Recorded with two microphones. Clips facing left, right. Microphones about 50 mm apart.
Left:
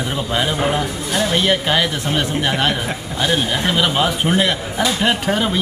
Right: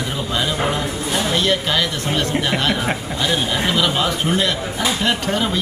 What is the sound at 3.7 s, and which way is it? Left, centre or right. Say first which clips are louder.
A man's voice: left 3 dB; centre.